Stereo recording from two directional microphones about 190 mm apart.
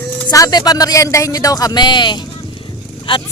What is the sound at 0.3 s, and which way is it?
Speech, 20° left (ahead or behind).